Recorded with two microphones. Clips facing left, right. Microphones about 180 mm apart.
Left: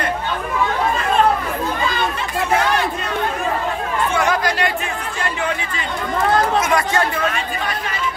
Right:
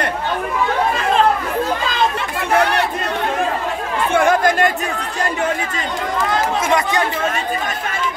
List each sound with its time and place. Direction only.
2.5 s chatter: 65° right (ahead or behind)
4.1 s chatter: 50° right (ahead or behind)
6.7 s speech: 15° right (ahead or behind)